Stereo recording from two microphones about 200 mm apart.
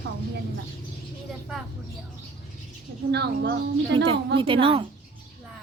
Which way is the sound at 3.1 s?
55° right (ahead or behind).